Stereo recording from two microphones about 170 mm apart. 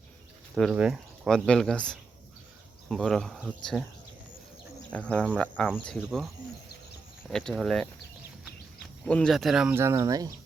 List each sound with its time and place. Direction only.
0.5 s speech: centre (ahead or behind)
4.9 s insect: 5° left (ahead or behind)
5.7 s speech: centre (ahead or behind)
9.0 s speech: 5° left (ahead or behind)
9.7 s speech: 15° right (ahead or behind)